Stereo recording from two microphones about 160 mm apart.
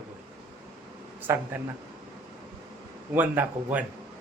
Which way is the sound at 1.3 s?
15° right (ahead or behind).